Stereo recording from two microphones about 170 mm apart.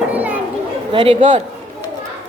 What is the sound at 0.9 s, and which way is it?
Speech, 30° right (ahead or behind).